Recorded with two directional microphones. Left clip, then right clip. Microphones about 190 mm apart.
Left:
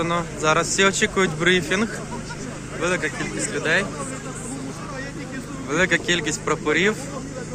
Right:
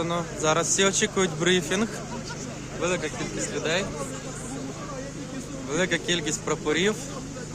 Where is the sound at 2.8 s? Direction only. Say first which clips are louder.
Left 4 dB; 5° right (ahead or behind).